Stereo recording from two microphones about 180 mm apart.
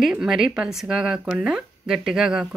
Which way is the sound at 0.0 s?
5° right (ahead or behind).